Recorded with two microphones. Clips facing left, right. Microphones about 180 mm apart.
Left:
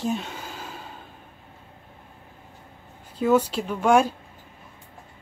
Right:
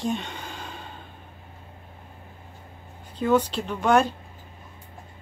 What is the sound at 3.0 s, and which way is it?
Speech, 10° left (ahead or behind).